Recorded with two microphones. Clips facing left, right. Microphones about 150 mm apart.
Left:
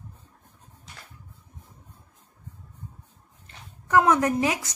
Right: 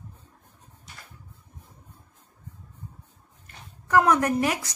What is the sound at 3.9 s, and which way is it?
Speech, 20° left (ahead or behind).